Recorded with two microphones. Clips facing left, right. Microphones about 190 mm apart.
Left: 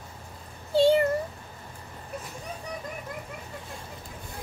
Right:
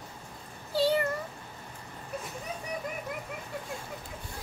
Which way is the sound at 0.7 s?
25° left (ahead or behind).